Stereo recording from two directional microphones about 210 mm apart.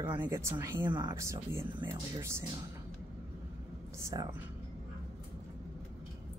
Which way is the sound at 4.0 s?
15° right (ahead or behind).